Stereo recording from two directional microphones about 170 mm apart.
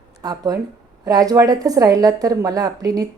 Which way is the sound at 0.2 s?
25° right (ahead or behind).